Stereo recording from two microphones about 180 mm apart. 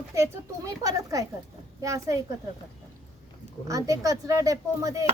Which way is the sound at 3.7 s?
20° right (ahead or behind).